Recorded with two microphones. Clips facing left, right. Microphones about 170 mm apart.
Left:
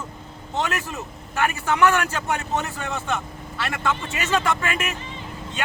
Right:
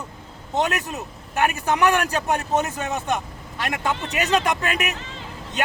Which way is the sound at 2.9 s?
15° right (ahead or behind).